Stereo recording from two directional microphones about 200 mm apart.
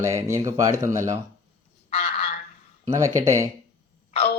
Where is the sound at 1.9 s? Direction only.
30° left (ahead or behind).